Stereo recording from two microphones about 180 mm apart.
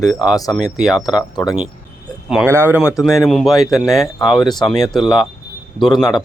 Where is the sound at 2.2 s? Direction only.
5° right (ahead or behind).